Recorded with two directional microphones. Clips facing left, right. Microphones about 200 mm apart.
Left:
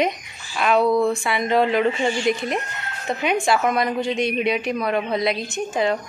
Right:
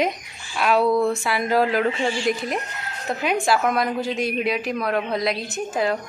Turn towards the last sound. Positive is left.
turn(degrees=0)  # may be behind; listen again after turning